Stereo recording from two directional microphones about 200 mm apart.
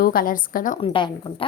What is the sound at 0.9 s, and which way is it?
Speech, 25° left (ahead or behind).